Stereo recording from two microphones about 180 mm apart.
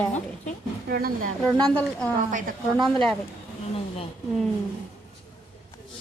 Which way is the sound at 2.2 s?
45° right (ahead or behind).